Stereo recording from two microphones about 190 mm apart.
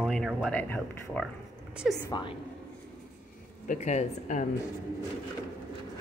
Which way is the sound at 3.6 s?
40° left (ahead or behind).